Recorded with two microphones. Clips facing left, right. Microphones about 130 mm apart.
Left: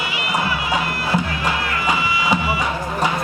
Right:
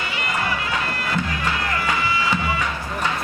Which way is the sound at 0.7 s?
15° left (ahead or behind).